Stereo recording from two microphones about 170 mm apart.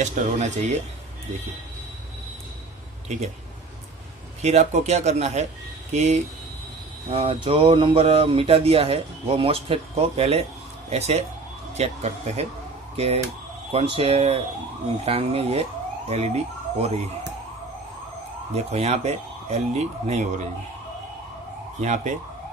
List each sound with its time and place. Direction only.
0.0 s speech: 45° right (ahead or behind)
4.4 s speech: 40° right (ahead or behind)
18.5 s speech: 40° right (ahead or behind)
21.7 s speech: 45° right (ahead or behind)